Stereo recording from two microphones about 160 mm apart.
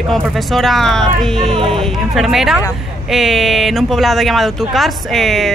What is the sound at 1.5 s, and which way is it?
Speech, 35° right (ahead or behind).